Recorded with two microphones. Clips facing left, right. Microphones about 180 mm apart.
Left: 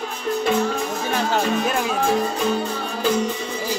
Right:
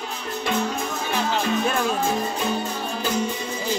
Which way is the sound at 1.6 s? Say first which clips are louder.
Even; 5° left (ahead or behind).